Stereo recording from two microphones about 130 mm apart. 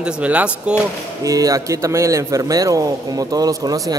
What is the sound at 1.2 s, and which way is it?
A man's voice, 25° right (ahead or behind).